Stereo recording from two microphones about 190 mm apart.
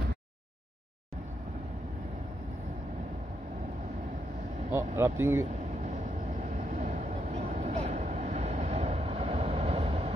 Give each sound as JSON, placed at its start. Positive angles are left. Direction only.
{"t": 4.7, "sound": "speech", "side_deg": -15}
{"t": 6.7, "sound": "vehicle", "side_deg": -40}